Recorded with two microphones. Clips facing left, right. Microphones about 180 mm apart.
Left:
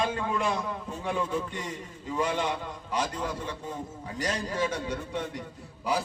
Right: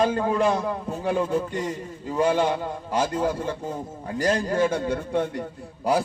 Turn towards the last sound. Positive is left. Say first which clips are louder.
# right 7 dB
turn(degrees=-55)  # may be behind; listen again after turning